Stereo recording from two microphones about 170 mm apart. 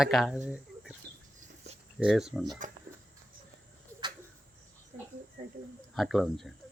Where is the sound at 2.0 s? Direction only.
5° right (ahead or behind).